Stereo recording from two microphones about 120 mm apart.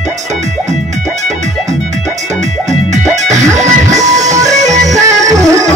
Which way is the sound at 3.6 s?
75° right (ahead or behind).